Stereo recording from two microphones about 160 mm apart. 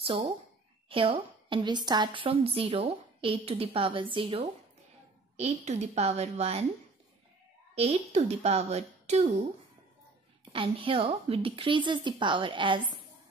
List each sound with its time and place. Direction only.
0.8 s a woman's voice: 35° right (ahead or behind)
7.7 s a woman's voice: 40° right (ahead or behind)
10.5 s a woman's voice: 35° right (ahead or behind)